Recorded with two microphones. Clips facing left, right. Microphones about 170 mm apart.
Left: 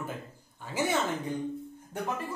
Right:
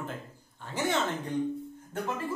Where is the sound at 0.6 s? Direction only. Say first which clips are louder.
Left 1 dB; 10° left (ahead or behind).